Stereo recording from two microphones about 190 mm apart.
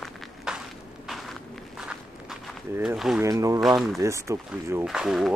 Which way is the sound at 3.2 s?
15° right (ahead or behind).